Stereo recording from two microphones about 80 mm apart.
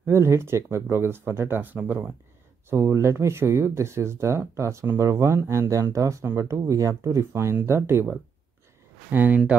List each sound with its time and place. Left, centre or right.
0.0 s speech: right